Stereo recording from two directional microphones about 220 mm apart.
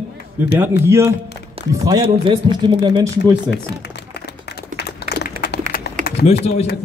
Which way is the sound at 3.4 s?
50° left (ahead or behind).